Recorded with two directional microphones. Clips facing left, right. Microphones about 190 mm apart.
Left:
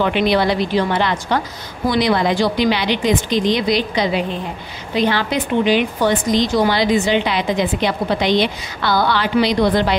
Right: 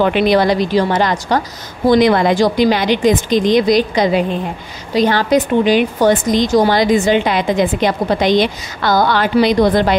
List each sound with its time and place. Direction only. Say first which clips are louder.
0.0 s a woman's voice: right 4 dB; 45° right (ahead or behind)